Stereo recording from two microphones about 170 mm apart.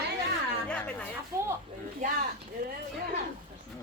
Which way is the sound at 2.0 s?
45° right (ahead or behind).